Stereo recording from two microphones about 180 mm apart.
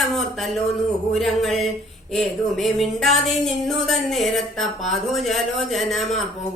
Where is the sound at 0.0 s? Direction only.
Centre (ahead or behind).